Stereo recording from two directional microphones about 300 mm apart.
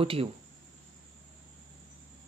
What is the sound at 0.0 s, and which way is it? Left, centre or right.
Speech, centre.